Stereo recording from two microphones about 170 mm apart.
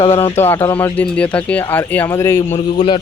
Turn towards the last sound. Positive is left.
turn(degrees=35)  # may be behind; listen again after turning